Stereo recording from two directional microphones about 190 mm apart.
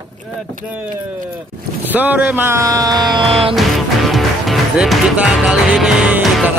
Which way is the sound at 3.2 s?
30° right (ahead or behind).